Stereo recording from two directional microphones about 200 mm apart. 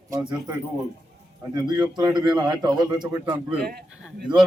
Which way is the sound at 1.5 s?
20° right (ahead or behind).